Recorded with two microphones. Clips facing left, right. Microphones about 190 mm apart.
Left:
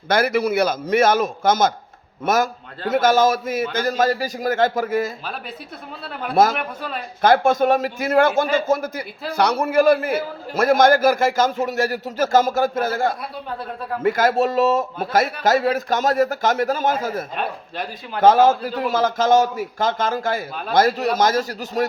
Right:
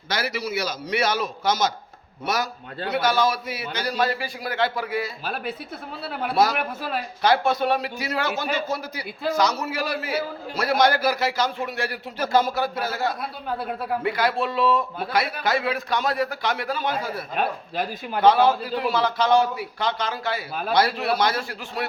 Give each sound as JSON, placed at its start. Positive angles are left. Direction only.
{"t": 0.1, "sound": "a man's voice", "side_deg": 50}
{"t": 6.3, "sound": "a man's voice", "side_deg": 50}
{"t": 9.3, "sound": "a man's voice", "side_deg": 60}